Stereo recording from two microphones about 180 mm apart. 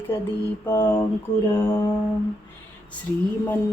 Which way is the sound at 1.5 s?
15° left (ahead or behind).